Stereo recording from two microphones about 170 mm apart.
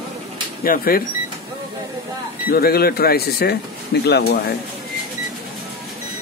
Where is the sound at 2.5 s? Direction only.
65° left (ahead or behind).